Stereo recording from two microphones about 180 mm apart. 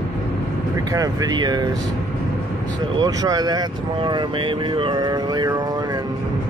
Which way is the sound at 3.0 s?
20° right (ahead or behind).